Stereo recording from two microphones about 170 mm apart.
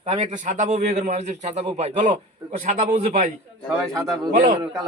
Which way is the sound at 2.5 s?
50° right (ahead or behind).